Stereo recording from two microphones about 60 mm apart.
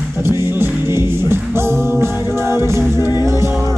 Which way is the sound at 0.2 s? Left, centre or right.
Right.